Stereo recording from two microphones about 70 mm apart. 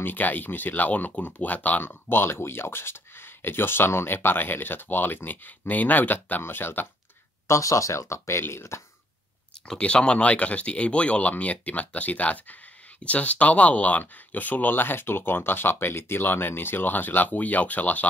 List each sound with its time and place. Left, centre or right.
0.0 s speech: left
7.4 s speech: left
9.7 s speech: centre